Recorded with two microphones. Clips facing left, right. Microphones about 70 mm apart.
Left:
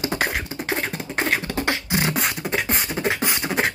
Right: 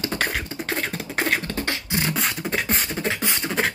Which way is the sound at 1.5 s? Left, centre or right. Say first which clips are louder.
Left 3 dB; centre.